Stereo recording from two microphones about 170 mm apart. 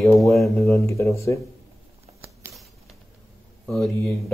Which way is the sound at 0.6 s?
15° left (ahead or behind).